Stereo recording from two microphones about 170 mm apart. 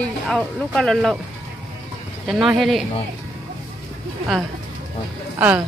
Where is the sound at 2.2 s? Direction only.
Centre (ahead or behind).